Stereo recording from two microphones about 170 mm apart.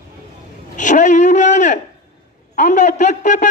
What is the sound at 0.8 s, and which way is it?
A man's voice, 45° left (ahead or behind).